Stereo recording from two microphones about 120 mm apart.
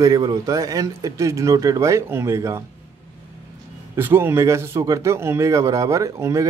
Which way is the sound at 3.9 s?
20° right (ahead or behind).